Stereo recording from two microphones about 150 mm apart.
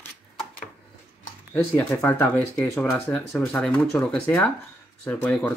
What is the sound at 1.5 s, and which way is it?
Speech, 15° left (ahead or behind).